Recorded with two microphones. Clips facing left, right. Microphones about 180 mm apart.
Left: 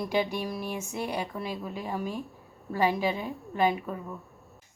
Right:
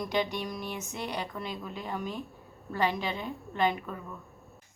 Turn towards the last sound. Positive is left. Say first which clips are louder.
# left 3 dB
turn(degrees=10)  # may be behind; listen again after turning